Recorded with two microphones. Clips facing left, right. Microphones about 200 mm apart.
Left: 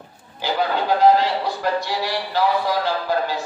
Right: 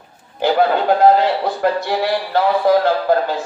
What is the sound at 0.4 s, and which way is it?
Speech, 50° right (ahead or behind).